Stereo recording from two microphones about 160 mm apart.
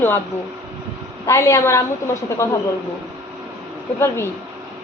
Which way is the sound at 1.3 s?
20° left (ahead or behind).